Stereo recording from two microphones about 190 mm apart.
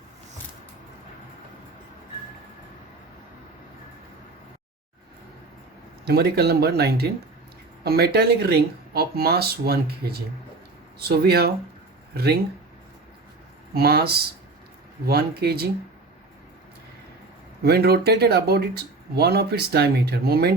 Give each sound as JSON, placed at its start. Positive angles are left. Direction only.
{"t": 6.1, "sound": "speech", "side_deg": -55}
{"t": 13.7, "sound": "speech", "side_deg": -55}
{"t": 17.6, "sound": "speech", "side_deg": -55}